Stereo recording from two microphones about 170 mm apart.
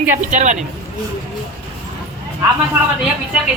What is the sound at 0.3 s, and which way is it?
Speech, 45° right (ahead or behind).